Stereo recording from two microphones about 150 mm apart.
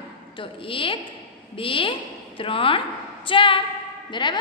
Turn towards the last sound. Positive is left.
turn(degrees=30)  # may be behind; listen again after turning